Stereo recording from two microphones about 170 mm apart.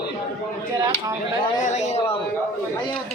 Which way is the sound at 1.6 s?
45° left (ahead or behind).